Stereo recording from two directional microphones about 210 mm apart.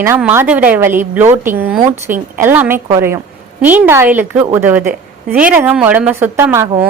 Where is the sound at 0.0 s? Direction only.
10° right (ahead or behind).